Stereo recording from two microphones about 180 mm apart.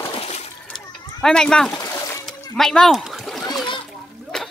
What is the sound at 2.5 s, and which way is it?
Splash, 5° left (ahead or behind).